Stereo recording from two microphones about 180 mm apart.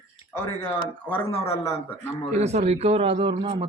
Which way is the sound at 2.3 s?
40° right (ahead or behind).